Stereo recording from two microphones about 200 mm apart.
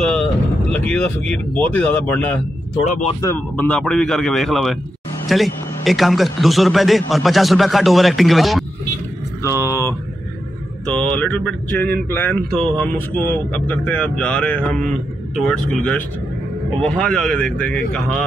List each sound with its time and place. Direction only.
0.0 s speech: 5° left (ahead or behind)
2.8 s speech: 35° left (ahead or behind)
3.2 s a man's voice: 10° left (ahead or behind)
9.4 s a sound: 15° left (ahead or behind)
10.9 s mantra: 5° left (ahead or behind)
12.1 s a man's voice: 10° left (ahead or behind)